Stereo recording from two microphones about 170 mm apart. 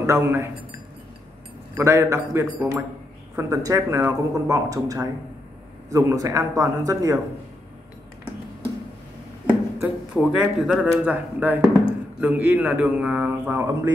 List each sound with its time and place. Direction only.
0.0 s speech: 15° right (ahead or behind)
1.8 s speech: 15° right (ahead or behind)
9.5 s speech: 10° right (ahead or behind)